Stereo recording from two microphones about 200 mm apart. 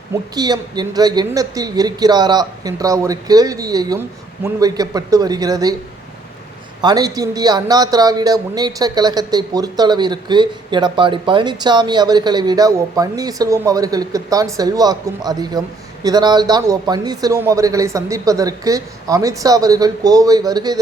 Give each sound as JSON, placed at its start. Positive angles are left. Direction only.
{"t": 0.3, "sound": "speech", "side_deg": -20}
{"t": 6.8, "sound": "speech", "side_deg": -20}